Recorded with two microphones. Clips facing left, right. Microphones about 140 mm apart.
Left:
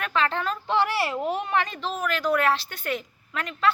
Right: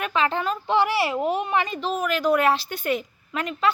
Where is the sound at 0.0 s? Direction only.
10° right (ahead or behind).